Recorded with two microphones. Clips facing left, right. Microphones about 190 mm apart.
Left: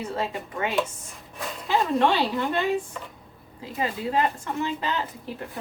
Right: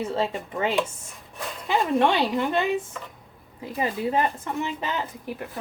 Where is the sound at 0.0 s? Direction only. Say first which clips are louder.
Right 3 dB; 25° right (ahead or behind).